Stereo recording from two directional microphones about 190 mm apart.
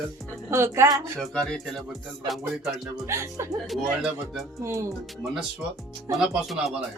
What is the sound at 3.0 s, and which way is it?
Speech, 15° right (ahead or behind).